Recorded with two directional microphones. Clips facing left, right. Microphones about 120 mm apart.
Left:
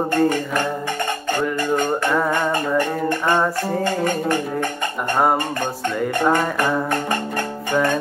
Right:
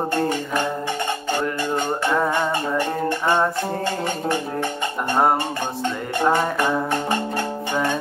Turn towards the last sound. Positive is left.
turn(degrees=-15)  # may be behind; listen again after turning